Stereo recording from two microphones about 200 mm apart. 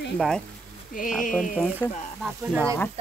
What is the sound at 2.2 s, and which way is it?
Speech, centre (ahead or behind).